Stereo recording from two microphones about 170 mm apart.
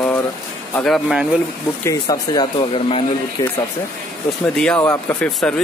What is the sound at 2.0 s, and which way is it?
Speech, 25° left (ahead or behind).